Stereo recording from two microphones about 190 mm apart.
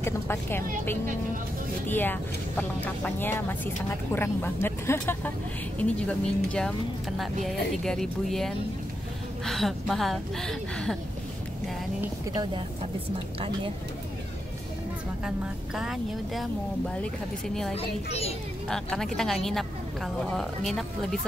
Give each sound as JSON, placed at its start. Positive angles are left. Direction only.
{"t": 0.0, "sound": "speech", "side_deg": 15}
{"t": 1.9, "sound": "speech", "side_deg": 10}
{"t": 15.2, "sound": "speech", "side_deg": -5}
{"t": 17.7, "sound": "a child's voice", "side_deg": 30}
{"t": 18.7, "sound": "speech", "side_deg": 5}